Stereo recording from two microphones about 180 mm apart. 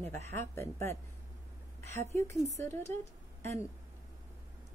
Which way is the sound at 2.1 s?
15° left (ahead or behind).